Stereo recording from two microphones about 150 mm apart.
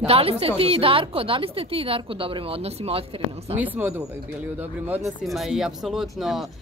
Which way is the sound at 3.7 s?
15° right (ahead or behind).